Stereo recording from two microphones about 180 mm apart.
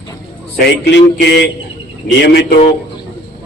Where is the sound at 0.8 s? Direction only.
70° left (ahead or behind).